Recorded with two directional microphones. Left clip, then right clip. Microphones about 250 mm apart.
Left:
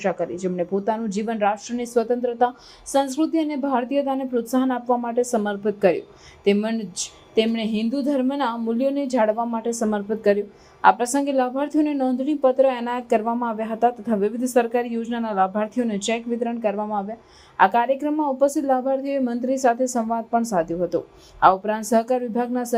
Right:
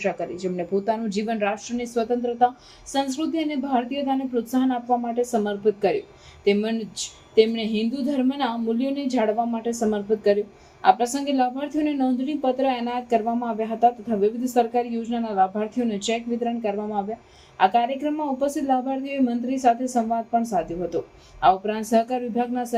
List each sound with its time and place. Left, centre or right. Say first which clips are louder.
0.0 s speech: left 2 dB; centre
1.8 s a woman's voice: left 3 dB; left